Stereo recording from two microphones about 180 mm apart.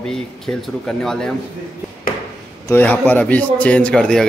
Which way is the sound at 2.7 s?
10° left (ahead or behind).